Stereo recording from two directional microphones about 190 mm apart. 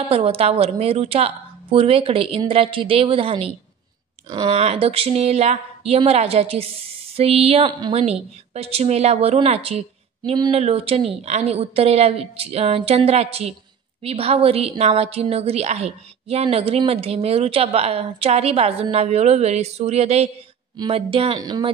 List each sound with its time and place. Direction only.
0.1 s a woman's voice: 30° right (ahead or behind)